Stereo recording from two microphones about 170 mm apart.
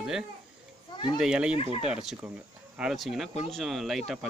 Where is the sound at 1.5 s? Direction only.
35° left (ahead or behind).